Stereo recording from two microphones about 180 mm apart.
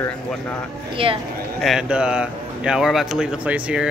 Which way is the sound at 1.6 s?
5° right (ahead or behind).